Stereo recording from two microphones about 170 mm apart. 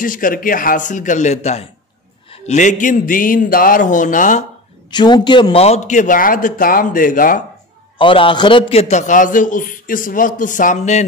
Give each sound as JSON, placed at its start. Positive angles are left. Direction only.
{"t": 0.0, "sound": "a man's voice", "side_deg": 50}
{"t": 4.9, "sound": "a man's voice", "side_deg": 25}
{"t": 8.0, "sound": "a man's voice", "side_deg": 30}